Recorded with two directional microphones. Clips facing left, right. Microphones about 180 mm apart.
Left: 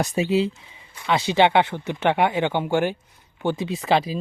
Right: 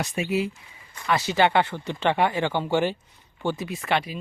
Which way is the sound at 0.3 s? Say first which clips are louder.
Left 4 dB; 25° left (ahead or behind).